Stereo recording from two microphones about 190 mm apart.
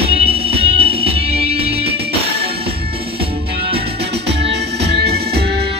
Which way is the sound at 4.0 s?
60° right (ahead or behind).